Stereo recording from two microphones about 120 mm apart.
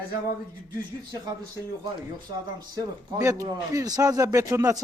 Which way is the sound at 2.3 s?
30° right (ahead or behind).